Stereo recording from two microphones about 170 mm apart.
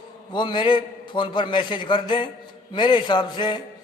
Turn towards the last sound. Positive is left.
turn(degrees=25)  # may be behind; listen again after turning